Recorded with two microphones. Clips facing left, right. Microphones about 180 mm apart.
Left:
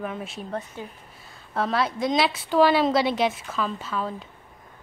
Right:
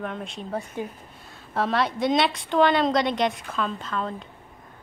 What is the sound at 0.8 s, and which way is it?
Speech, 15° right (ahead or behind).